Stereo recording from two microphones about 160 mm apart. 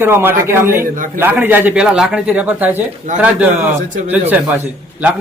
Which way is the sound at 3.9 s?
50° right (ahead or behind).